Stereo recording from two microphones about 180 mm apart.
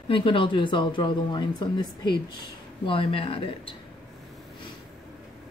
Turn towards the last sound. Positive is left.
turn(degrees=30)  # may be behind; listen again after turning